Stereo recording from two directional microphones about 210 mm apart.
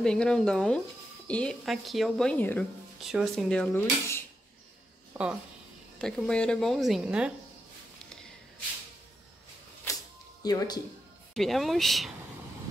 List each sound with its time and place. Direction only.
0.0 s speech: 5° left (ahead or behind)
5.1 s speech: 5° right (ahead or behind)
10.4 s speech: 15° left (ahead or behind)
11.3 s speech: centre (ahead or behind)